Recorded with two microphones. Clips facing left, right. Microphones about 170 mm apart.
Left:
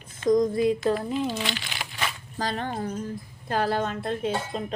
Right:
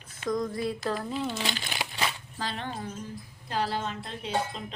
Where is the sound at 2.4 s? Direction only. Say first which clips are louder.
Left 8 dB; 45° left (ahead or behind).